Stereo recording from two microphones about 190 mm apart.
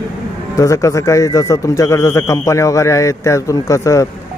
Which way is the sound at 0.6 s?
15° left (ahead or behind).